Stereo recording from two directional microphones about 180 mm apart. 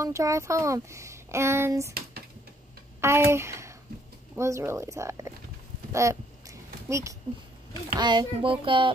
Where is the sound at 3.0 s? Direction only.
15° right (ahead or behind).